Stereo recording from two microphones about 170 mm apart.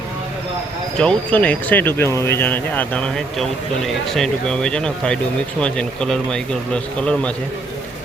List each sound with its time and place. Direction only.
0.9 s speech: 5° left (ahead or behind)